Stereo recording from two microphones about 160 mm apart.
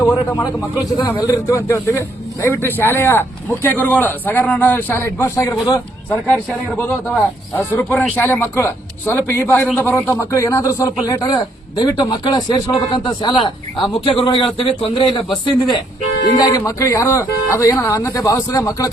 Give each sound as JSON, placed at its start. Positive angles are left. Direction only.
{"t": 0.0, "sound": "a man's voice", "side_deg": 25}
{"t": 6.1, "sound": "a man's voice", "side_deg": 5}